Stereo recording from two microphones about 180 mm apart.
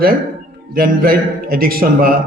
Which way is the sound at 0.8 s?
55° right (ahead or behind).